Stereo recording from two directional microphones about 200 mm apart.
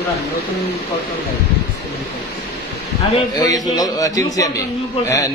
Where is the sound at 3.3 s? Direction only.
20° left (ahead or behind).